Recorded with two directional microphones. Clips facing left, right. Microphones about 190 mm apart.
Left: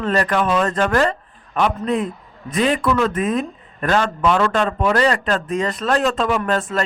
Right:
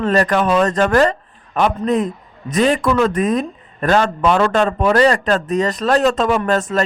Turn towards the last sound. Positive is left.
turn(degrees=-40)  # may be behind; listen again after turning